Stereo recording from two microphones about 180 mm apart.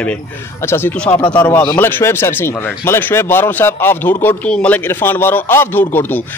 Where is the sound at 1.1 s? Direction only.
25° left (ahead or behind).